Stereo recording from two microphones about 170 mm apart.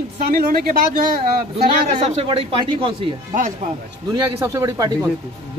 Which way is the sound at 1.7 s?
40° right (ahead or behind).